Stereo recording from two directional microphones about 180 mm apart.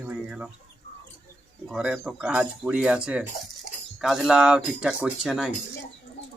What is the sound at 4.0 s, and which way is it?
Speech, centre (ahead or behind).